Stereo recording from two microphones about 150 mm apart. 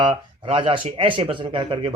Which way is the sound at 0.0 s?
35° right (ahead or behind).